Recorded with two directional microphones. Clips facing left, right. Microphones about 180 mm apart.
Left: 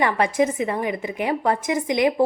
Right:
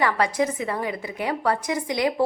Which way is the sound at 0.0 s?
20° left (ahead or behind).